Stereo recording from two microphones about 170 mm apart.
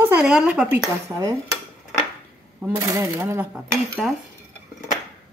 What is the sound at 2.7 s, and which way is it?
Speech, 15° right (ahead or behind).